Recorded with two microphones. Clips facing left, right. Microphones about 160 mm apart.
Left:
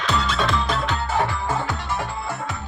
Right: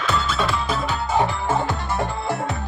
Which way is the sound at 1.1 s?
20° right (ahead or behind).